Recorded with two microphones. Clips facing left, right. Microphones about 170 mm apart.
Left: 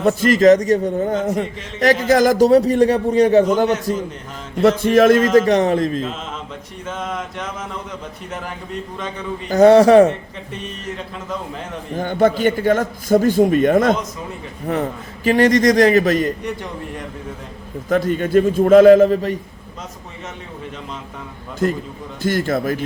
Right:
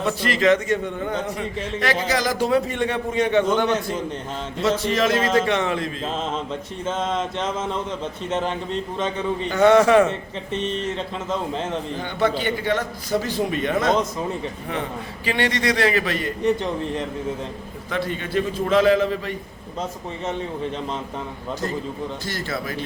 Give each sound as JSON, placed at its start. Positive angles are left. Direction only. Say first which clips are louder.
{"t": 0.0, "sound": "a man's voice", "louder": "left 8 dB", "side_deg": 45}
{"t": 4.6, "sound": "a man's voice", "louder": "left 9 dB", "side_deg": 50}
{"t": 6.0, "sound": "mantra", "louder": "even", "side_deg": -30}
{"t": 6.8, "sound": "a man's voice", "louder": "right 2 dB", "side_deg": -25}
{"t": 9.5, "sound": "a man's voice", "louder": "left 6 dB", "side_deg": 35}
{"t": 10.1, "sound": "a man's voice", "louder": "left 1 dB", "side_deg": -25}
{"t": 11.9, "sound": "a man's voice", "louder": "left 8 dB", "side_deg": 45}
{"t": 16.4, "sound": "a man's voice", "louder": "right 5 dB", "side_deg": -25}
{"t": 17.8, "sound": "a man's voice", "louder": "left 9 dB", "side_deg": 45}
{"t": 22.2, "sound": "a man's voice", "louder": "left 9 dB", "side_deg": 50}